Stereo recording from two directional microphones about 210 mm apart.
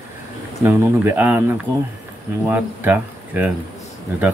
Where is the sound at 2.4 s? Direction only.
10° right (ahead or behind).